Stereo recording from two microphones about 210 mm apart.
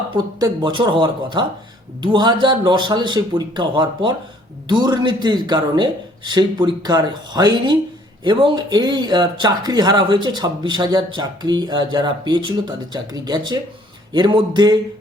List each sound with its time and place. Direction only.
0.3 s speech: 20° right (ahead or behind)